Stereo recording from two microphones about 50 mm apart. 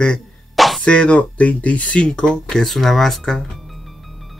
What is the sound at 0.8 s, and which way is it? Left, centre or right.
Speech, left.